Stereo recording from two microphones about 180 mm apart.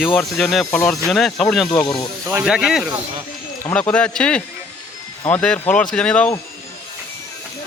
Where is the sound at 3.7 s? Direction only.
5° left (ahead or behind).